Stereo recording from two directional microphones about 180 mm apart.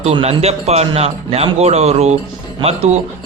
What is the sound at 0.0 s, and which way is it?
Speech, 35° right (ahead or behind).